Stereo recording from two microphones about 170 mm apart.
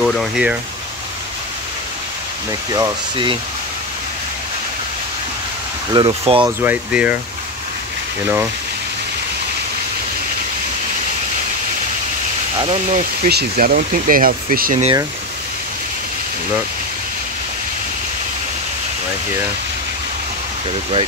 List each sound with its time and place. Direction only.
0.0 s speech: 5° right (ahead or behind)
2.7 s speech: 25° right (ahead or behind)
5.9 s speech: 35° right (ahead or behind)
6.4 s speech: 10° right (ahead or behind)
12.5 s speech: 40° right (ahead or behind)
13.3 s speech: 65° right (ahead or behind)